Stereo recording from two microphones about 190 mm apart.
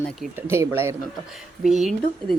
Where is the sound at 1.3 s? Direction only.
Centre (ahead or behind).